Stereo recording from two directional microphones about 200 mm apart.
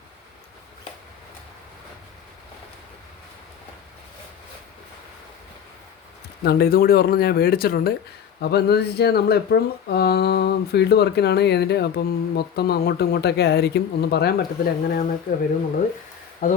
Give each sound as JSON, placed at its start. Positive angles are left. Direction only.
{"t": 6.4, "sound": "speech", "side_deg": 50}
{"t": 16.4, "sound": "speech", "side_deg": 40}